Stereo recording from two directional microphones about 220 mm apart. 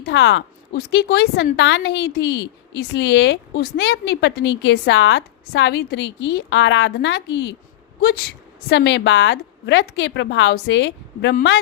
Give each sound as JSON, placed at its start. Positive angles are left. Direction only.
{"t": 0.0, "sound": "a woman's voice", "side_deg": 55}